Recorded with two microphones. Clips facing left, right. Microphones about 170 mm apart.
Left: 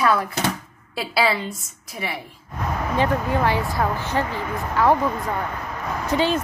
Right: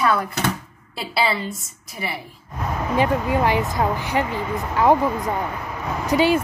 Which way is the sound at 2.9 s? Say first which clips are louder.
Right 2 dB; 15° right (ahead or behind).